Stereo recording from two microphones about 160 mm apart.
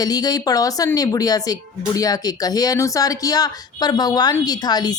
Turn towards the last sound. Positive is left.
turn(degrees=25)  # may be behind; listen again after turning